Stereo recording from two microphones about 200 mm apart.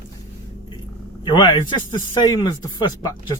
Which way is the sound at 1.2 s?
20° left (ahead or behind).